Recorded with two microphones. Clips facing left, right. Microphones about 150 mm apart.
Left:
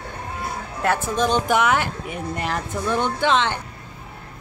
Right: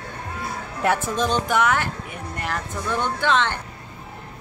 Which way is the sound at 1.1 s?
15° left (ahead or behind).